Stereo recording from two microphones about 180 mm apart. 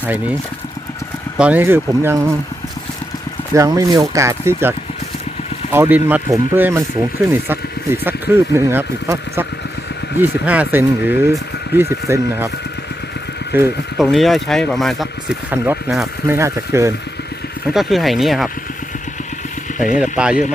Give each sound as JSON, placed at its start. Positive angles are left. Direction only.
{"t": 0.0, "sound": "speech", "side_deg": -10}
{"t": 1.4, "sound": "speech", "side_deg": -10}
{"t": 3.5, "sound": "speech", "side_deg": -20}
{"t": 5.7, "sound": "speech", "side_deg": -10}
{"t": 13.5, "sound": "speech", "side_deg": -10}
{"t": 14.0, "sound": "speech", "side_deg": 0}
{"t": 17.7, "sound": "speech", "side_deg": 0}
{"t": 20.0, "sound": "speech", "side_deg": -5}